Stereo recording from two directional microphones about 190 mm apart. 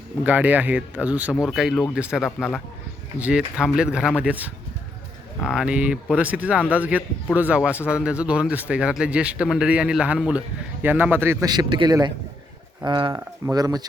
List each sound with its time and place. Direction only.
0.3 s speech: 10° right (ahead or behind)